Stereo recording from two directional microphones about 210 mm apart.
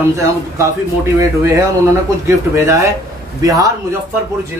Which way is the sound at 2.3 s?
15° right (ahead or behind).